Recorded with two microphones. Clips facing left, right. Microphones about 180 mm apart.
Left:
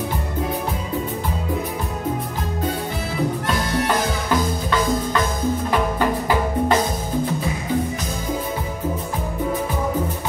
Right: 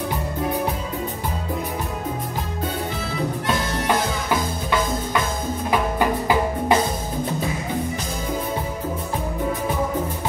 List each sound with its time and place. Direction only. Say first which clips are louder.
5.7 s music: right 3 dB; 10° right (ahead or behind)